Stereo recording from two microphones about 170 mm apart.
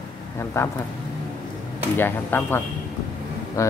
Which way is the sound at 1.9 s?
10° left (ahead or behind).